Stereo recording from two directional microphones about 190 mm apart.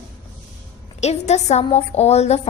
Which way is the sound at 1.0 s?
35° left (ahead or behind).